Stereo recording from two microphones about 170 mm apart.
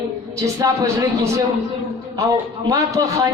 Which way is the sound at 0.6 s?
20° right (ahead or behind).